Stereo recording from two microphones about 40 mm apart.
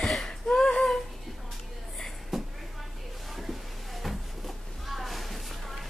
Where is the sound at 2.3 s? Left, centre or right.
Centre.